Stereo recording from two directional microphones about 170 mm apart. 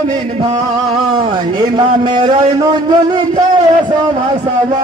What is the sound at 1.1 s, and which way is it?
A man's voice, 25° right (ahead or behind).